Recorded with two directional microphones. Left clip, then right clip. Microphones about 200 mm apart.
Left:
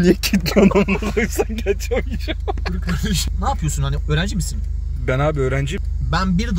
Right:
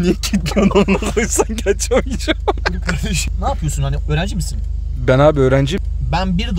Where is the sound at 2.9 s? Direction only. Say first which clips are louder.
Right 1 dB; 20° right (ahead or behind).